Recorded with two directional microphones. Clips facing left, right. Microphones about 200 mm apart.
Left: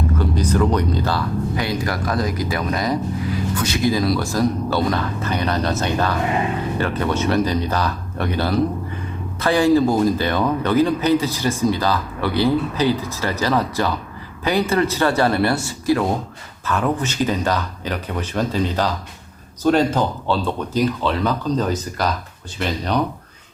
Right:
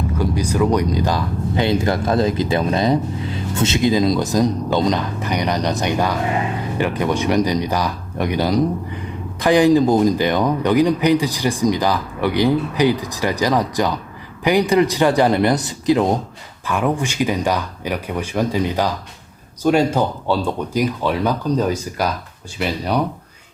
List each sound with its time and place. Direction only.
0.2 s speech: 10° right (ahead or behind)